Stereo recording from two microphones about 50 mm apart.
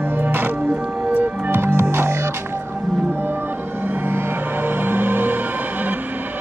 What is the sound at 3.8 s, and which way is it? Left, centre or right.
Music, right.